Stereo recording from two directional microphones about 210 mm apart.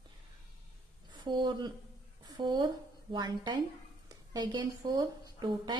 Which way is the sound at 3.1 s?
20° right (ahead or behind).